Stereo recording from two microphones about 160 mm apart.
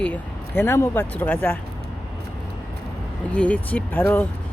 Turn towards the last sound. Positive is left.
turn(degrees=10)  # may be behind; listen again after turning